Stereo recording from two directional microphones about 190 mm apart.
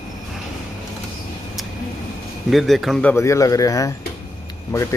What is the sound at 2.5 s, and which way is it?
Speech, centre (ahead or behind).